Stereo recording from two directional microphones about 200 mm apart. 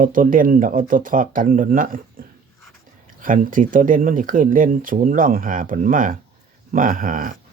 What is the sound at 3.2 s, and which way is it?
Speech, 40° right (ahead or behind).